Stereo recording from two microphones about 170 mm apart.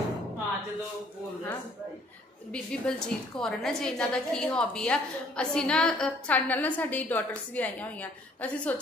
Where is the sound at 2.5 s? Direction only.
5° left (ahead or behind).